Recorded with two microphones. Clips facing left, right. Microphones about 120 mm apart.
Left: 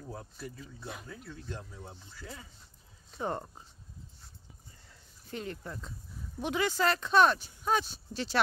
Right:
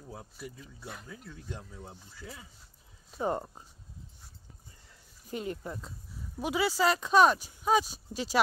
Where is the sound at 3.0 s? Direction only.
10° right (ahead or behind).